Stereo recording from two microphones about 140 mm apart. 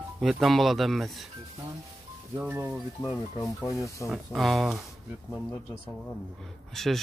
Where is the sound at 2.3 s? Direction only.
10° right (ahead or behind).